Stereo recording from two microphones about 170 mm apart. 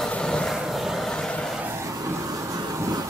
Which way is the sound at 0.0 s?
5° left (ahead or behind).